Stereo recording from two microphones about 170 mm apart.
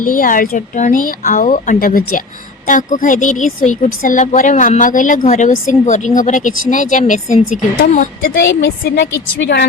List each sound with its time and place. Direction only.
0.0 s a woman's voice: 55° left (ahead or behind)
8.4 s a woman's voice: 70° left (ahead or behind); by 9.6 s 90° left